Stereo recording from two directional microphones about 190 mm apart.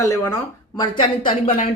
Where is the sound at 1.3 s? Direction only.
30° left (ahead or behind).